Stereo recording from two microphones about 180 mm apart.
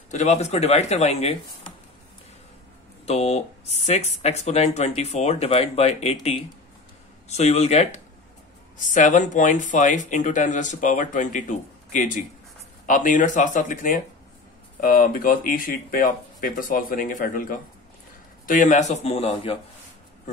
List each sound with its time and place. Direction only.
0.1 s speech: 40° left (ahead or behind)
3.1 s speech: 35° left (ahead or behind)
7.2 s speech: 40° left (ahead or behind)